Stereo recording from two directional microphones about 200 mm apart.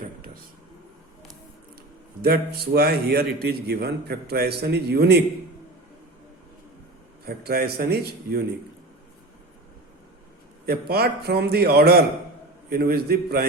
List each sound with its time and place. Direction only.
2.2 s a man's voice: 50° right (ahead or behind)
7.3 s a man's voice: 50° right (ahead or behind)
10.7 s a man's voice: 50° right (ahead or behind)